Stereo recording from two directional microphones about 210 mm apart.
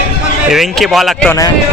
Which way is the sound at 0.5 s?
Centre (ahead or behind).